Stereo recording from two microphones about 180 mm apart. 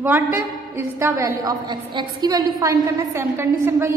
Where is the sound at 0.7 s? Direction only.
15° right (ahead or behind).